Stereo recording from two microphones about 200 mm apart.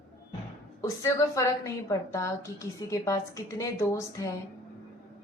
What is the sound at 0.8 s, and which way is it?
A woman's voice, 15° left (ahead or behind).